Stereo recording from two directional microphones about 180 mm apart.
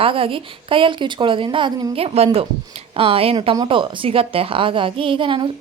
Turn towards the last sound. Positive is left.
turn(degrees=-30)  # may be behind; listen again after turning